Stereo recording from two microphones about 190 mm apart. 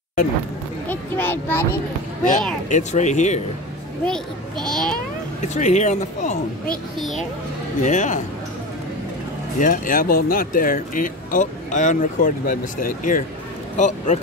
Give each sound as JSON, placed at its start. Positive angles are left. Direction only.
{"t": 0.8, "sound": "a child's voice", "side_deg": 10}
{"t": 2.7, "sound": "speech", "side_deg": 40}
{"t": 4.0, "sound": "a child's voice", "side_deg": 5}
{"t": 5.5, "sound": "speech", "side_deg": 40}
{"t": 7.8, "sound": "speech", "side_deg": 40}
{"t": 9.6, "sound": "speech", "side_deg": 45}